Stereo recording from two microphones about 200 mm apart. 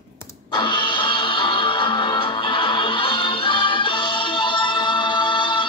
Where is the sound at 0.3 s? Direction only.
25° left (ahead or behind).